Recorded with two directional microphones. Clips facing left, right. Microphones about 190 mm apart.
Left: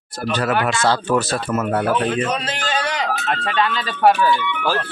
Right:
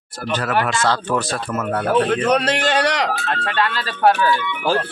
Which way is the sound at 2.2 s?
70° right (ahead or behind).